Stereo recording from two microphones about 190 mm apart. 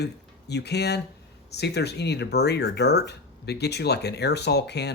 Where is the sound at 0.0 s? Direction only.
60° left (ahead or behind).